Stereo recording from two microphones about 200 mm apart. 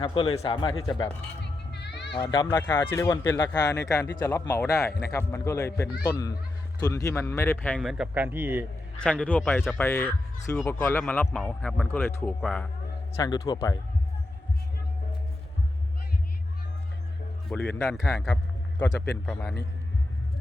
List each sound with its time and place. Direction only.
0.0 s speech: 25° left (ahead or behind)
1.7 s music: 60° left (ahead or behind)
2.3 s speech: 20° left (ahead or behind)
7.8 s speech: centre (ahead or behind)
9.0 s speech: 5° left (ahead or behind)
13.2 s speech: 20° left (ahead or behind)
17.7 s a man's voice: 15° left (ahead or behind)